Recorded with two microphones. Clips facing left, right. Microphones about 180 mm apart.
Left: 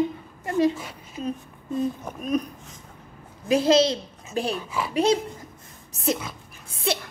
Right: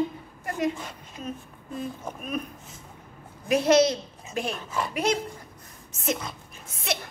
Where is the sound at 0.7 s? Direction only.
5° left (ahead or behind).